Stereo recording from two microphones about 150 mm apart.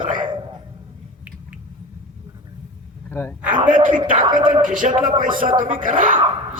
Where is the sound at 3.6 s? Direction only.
60° right (ahead or behind).